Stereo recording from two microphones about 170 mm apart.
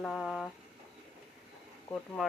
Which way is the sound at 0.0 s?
Centre (ahead or behind).